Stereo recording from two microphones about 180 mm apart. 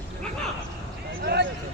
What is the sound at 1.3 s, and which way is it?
Speech, 65° right (ahead or behind).